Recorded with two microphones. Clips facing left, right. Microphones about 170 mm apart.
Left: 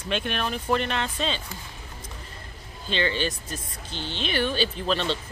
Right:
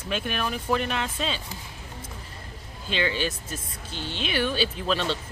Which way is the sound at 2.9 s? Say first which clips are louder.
Left 1 dB; 10° right (ahead or behind).